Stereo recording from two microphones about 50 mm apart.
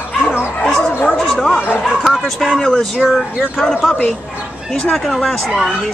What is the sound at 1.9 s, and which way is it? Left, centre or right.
Bow-wow, centre.